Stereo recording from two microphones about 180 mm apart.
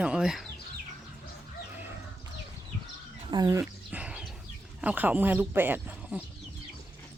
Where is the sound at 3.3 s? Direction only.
20° right (ahead or behind).